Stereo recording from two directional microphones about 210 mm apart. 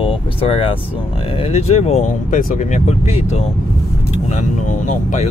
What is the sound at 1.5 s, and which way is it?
Speech, 30° left (ahead or behind).